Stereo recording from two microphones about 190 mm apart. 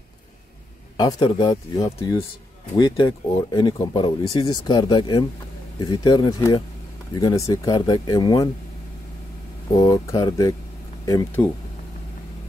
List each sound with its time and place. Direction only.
0.9 s speech: 25° left (ahead or behind)
9.8 s speech: 20° left (ahead or behind)